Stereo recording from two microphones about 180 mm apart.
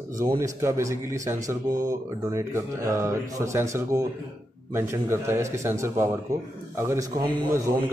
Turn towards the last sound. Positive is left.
turn(degrees=-15)  # may be behind; listen again after turning